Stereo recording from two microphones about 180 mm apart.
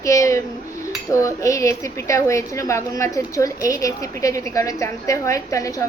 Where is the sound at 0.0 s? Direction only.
15° left (ahead or behind).